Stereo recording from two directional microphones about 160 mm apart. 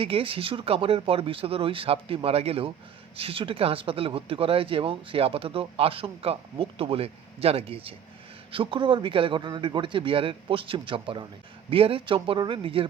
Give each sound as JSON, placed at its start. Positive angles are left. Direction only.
{"t": 0.0, "sound": "speech", "side_deg": -35}